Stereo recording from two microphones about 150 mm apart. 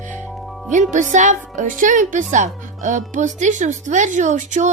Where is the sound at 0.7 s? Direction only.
55° right (ahead or behind).